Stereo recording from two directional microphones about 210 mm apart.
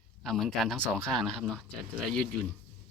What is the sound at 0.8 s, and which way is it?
Speech, 10° right (ahead or behind).